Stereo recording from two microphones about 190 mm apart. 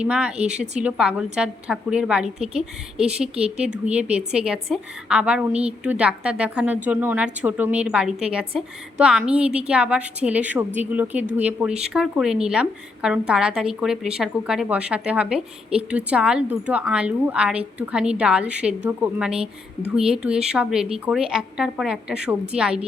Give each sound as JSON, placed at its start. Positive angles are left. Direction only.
{"t": 0.0, "sound": "speech", "side_deg": -5}
{"t": 0.3, "sound": "speech", "side_deg": -35}
{"t": 0.8, "sound": "speech", "side_deg": -5}